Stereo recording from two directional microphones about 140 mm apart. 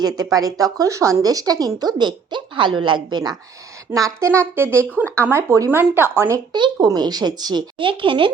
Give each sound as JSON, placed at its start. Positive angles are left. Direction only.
{"t": 0.0, "sound": "a woman's voice", "side_deg": -25}
{"t": 6.5, "sound": "speech", "side_deg": -30}